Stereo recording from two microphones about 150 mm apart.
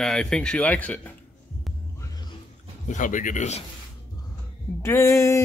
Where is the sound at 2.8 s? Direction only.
60° left (ahead or behind).